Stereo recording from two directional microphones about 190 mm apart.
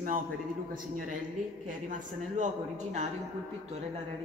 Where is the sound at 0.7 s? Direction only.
45° right (ahead or behind).